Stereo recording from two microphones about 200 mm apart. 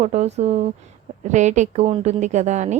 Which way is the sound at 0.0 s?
35° right (ahead or behind).